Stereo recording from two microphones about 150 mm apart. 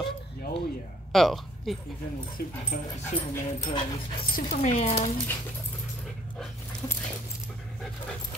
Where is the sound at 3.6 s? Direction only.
35° left (ahead or behind).